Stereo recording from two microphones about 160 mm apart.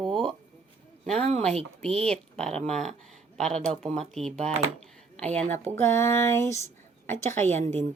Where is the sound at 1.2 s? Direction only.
40° right (ahead or behind).